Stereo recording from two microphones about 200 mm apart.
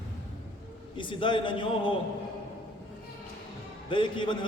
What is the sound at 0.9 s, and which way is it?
Speech, 25° left (ahead or behind).